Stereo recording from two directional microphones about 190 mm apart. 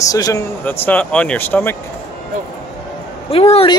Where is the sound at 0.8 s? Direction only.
10° left (ahead or behind).